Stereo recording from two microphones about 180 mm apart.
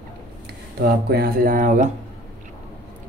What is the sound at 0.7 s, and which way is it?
Speech, 60° right (ahead or behind).